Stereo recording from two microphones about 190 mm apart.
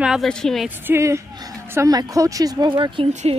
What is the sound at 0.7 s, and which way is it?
A woman's voice, 10° right (ahead or behind).